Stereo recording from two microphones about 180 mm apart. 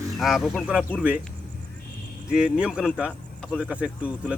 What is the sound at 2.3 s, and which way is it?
Speech, 5° right (ahead or behind).